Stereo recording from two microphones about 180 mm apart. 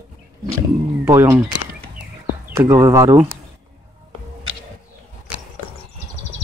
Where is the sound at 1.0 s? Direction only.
15° right (ahead or behind).